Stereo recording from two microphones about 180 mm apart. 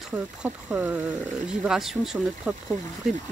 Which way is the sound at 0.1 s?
10° right (ahead or behind).